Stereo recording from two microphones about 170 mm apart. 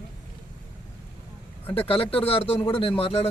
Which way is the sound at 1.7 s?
35° left (ahead or behind).